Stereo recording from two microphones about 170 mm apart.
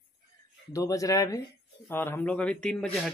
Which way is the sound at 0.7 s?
20° left (ahead or behind).